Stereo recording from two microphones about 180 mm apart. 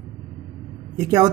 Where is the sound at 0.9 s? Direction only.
20° right (ahead or behind).